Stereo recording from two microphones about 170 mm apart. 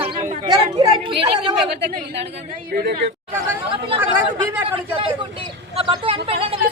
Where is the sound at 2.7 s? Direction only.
70° right (ahead or behind).